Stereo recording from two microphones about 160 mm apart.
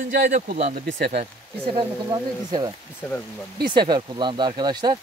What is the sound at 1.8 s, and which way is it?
Speech, 25° right (ahead or behind).